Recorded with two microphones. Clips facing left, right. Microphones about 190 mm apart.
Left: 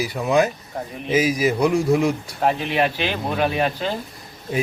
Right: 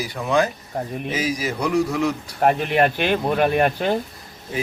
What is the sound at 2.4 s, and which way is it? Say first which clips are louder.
Speech: right 3 dB; 55° right (ahead or behind).